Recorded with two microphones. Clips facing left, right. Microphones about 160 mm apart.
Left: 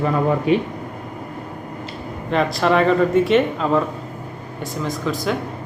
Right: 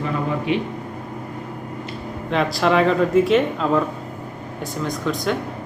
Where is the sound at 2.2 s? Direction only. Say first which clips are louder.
Left 1 dB; centre (ahead or behind).